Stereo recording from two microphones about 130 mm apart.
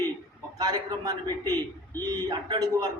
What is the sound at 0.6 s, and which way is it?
A man's voice, 30° right (ahead or behind).